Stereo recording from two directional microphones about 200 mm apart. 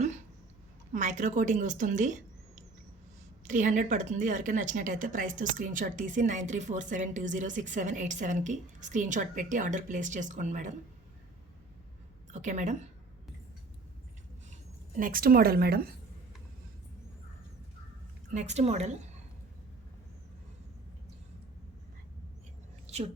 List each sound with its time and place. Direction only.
0.9 s speech: 40° right (ahead or behind)
3.4 s speech: 40° right (ahead or behind)
12.3 s speech: 35° right (ahead or behind)
14.5 s speech: 45° right (ahead or behind)
18.3 s speech: 35° right (ahead or behind)